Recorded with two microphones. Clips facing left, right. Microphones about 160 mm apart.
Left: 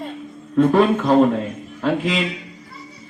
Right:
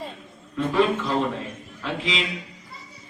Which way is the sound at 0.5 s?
60° left (ahead or behind).